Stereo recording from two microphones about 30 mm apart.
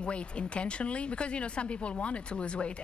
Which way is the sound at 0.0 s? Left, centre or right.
Left.